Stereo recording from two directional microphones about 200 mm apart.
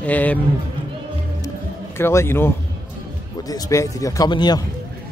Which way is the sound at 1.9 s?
10° left (ahead or behind).